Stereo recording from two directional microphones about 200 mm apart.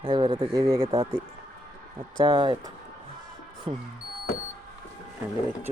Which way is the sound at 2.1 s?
25° right (ahead or behind).